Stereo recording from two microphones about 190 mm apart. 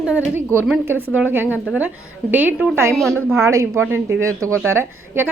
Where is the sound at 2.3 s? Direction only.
10° right (ahead or behind).